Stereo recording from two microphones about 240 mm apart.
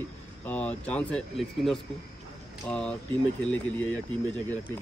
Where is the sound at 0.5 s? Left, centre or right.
Centre.